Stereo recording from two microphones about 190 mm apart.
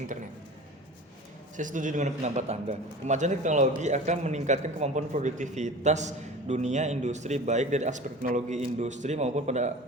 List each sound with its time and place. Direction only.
1.5 s a man's voice: 40° right (ahead or behind)